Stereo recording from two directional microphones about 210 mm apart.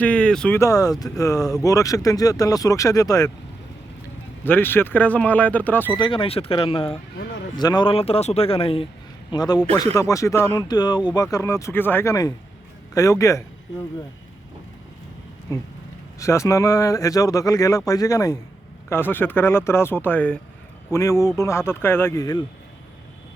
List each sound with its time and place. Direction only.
0.0 s speech: 5° left (ahead or behind)
4.4 s speech: 10° left (ahead or behind)
6.0 s speech: 25° left (ahead or behind)
16.1 s speech: 15° left (ahead or behind)